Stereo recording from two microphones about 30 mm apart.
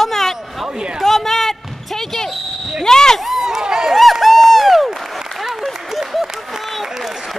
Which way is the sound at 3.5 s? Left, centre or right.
Right.